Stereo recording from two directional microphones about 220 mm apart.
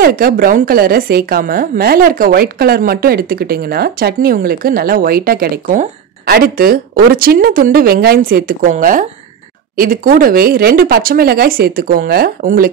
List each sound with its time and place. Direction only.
0.0 s a woman's voice: 40° right (ahead or behind)